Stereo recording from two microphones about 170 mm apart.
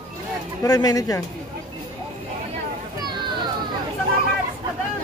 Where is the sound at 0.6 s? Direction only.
20° left (ahead or behind).